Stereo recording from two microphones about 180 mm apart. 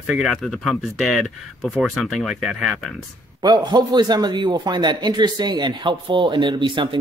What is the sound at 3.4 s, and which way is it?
A man's voice, 25° right (ahead or behind).